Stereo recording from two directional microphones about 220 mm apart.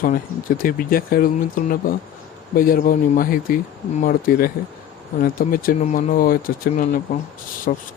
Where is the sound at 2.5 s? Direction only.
40° left (ahead or behind).